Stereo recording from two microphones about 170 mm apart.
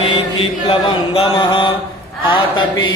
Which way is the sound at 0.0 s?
35° left (ahead or behind).